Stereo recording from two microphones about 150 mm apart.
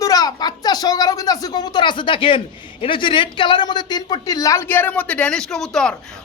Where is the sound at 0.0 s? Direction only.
25° left (ahead or behind).